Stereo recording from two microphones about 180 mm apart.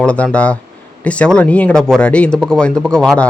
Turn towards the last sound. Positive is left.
turn(degrees=5)  # may be behind; listen again after turning